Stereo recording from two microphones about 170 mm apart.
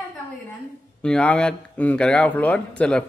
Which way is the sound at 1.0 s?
5° left (ahead or behind).